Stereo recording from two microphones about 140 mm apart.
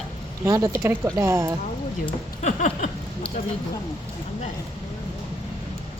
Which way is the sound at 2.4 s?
60° left (ahead or behind).